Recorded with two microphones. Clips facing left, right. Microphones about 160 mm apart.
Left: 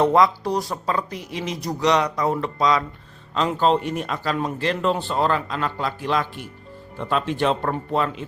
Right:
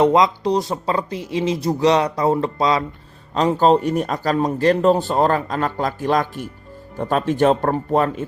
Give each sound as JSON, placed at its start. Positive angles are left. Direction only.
{"t": 0.0, "sound": "speech", "side_deg": -20}